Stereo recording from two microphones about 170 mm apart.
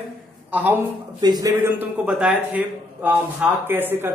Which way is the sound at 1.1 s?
25° right (ahead or behind).